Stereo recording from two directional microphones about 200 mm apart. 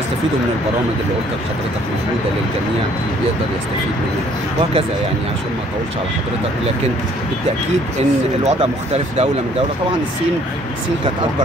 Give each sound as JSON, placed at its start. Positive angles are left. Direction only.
{"t": 8.5, "sound": "speech", "side_deg": -30}